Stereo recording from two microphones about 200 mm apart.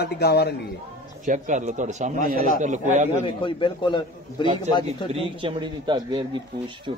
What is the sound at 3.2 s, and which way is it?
A man's voice, 25° left (ahead or behind).